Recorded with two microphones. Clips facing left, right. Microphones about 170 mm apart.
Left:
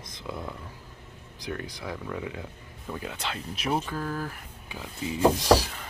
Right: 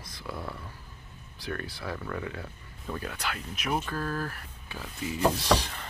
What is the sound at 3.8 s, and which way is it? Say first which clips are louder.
Speech: even; 15° left (ahead or behind).